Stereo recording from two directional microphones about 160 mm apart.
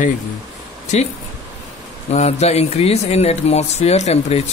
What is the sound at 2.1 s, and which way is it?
Speech, 40° left (ahead or behind).